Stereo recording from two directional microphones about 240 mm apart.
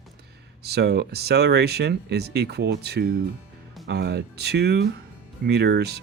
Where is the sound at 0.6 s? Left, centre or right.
Right.